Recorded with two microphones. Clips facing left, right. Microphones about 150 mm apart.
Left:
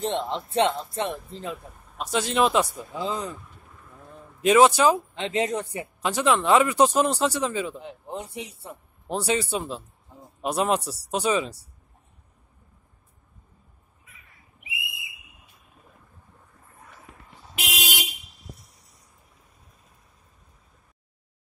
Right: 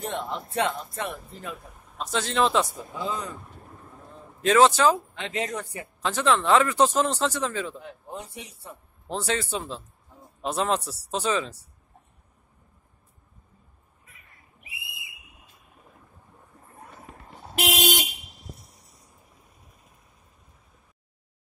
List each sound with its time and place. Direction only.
0.0 s speech: 25° left (ahead or behind)
1.6 s a sound: centre (ahead or behind)
2.0 s speech: 10° left (ahead or behind)
3.0 s speech: 25° left (ahead or behind)
4.4 s speech: 15° left (ahead or behind)
5.1 s speech: 25° left (ahead or behind)
6.0 s speech: 10° left (ahead or behind)
7.8 s speech: 25° left (ahead or behind)
17.4 s vehicle: 50° right (ahead or behind)